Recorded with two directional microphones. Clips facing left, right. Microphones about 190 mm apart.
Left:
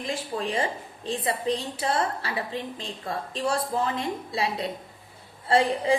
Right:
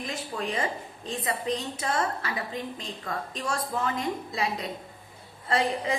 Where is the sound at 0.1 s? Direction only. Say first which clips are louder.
Left 4 dB; 30° left (ahead or behind).